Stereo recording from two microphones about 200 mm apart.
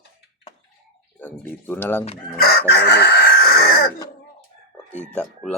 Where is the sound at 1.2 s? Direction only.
10° left (ahead or behind).